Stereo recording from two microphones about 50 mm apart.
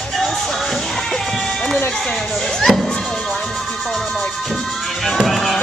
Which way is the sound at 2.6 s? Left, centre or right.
Centre.